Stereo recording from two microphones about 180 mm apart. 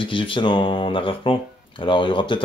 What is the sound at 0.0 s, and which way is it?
A man's voice, 25° left (ahead or behind).